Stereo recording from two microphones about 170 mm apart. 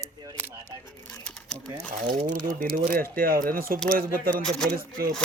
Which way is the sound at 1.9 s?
50° right (ahead or behind).